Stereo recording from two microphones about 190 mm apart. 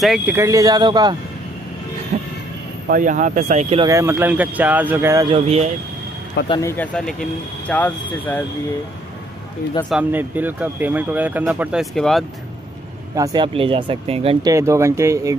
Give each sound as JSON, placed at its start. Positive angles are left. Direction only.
{"t": 0.0, "sound": "speech", "side_deg": -5}
{"t": 2.1, "sound": "vehicle", "side_deg": -45}
{"t": 2.9, "sound": "speech", "side_deg": -45}
{"t": 3.8, "sound": "speech", "side_deg": -15}
{"t": 5.3, "sound": "speech", "side_deg": -35}
{"t": 6.6, "sound": "speech", "side_deg": 10}
{"t": 9.8, "sound": "speech", "side_deg": -5}
{"t": 13.1, "sound": "speech", "side_deg": -20}
{"t": 14.5, "sound": "speech", "side_deg": -15}